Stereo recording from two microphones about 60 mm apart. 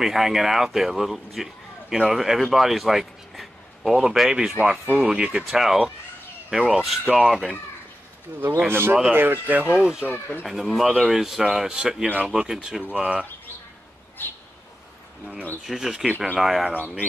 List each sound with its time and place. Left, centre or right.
0.0 s speech: centre
8.3 s speech: right
9.8 s speech: centre
10.0 s speech: left
10.4 s speech: centre
12.9 s speech: right
14.2 s bird: left
15.6 s speech: centre